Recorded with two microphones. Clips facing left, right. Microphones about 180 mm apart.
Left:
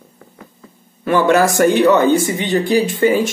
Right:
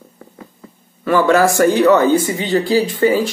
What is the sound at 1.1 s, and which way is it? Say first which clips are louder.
Speech: even; 20° left (ahead or behind).